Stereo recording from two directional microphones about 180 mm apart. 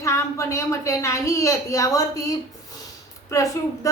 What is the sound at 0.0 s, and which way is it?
A woman's voice, 15° left (ahead or behind).